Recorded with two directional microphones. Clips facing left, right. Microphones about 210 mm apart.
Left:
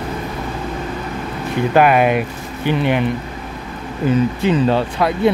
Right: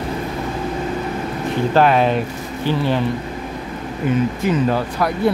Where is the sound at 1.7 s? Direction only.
10° left (ahead or behind).